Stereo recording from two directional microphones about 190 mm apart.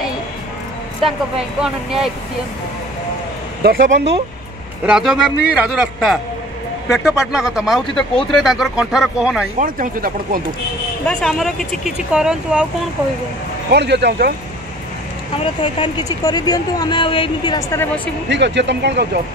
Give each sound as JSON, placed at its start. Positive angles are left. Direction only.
{"t": 1.6, "sound": "speech", "side_deg": -5}
{"t": 3.6, "sound": "speech", "side_deg": -50}
{"t": 4.8, "sound": "speech", "side_deg": -5}
{"t": 9.6, "sound": "speech", "side_deg": -45}
{"t": 11.1, "sound": "speech", "side_deg": 0}
{"t": 13.7, "sound": "speech", "side_deg": -60}
{"t": 15.3, "sound": "a woman's voice", "side_deg": 25}
{"t": 18.3, "sound": "speech", "side_deg": -65}